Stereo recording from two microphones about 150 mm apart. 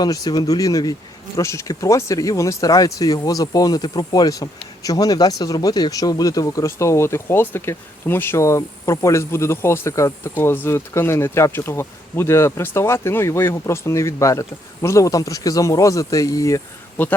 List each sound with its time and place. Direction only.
0.0 s speech: 25° left (ahead or behind)
17.0 s speech: 10° left (ahead or behind)